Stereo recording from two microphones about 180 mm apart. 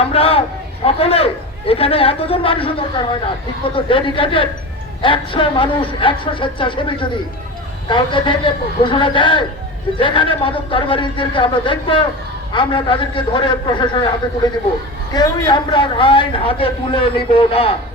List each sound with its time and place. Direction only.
0.0 s a man's voice: 30° left (ahead or behind)